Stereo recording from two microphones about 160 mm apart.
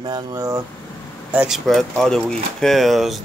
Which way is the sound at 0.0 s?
25° right (ahead or behind).